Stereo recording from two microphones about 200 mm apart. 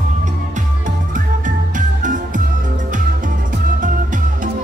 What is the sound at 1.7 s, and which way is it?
Music, 40° right (ahead or behind).